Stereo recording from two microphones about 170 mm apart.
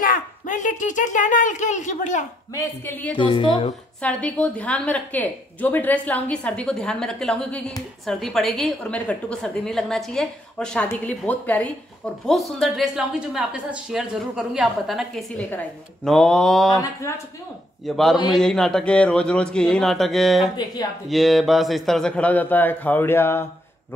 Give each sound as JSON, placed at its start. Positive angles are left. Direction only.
{"t": 0.0, "sound": "speech", "side_deg": 50}
{"t": 2.5, "sound": "a woman's voice", "side_deg": 10}
{"t": 3.2, "sound": "a woman's voice", "side_deg": 30}
{"t": 4.0, "sound": "a woman's voice", "side_deg": 10}
{"t": 16.7, "sound": "a woman's voice", "side_deg": 20}
{"t": 17.8, "sound": "a woman's voice", "side_deg": 0}